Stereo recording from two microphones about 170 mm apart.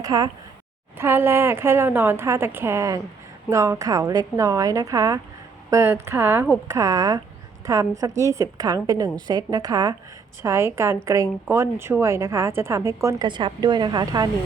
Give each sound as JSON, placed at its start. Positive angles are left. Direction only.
{"t": 0.0, "sound": "a woman's voice", "side_deg": -20}